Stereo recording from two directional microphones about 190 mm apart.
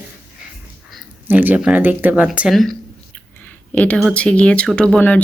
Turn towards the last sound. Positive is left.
turn(degrees=5)  # may be behind; listen again after turning